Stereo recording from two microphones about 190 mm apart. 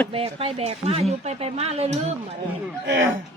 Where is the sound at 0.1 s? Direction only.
30° right (ahead or behind).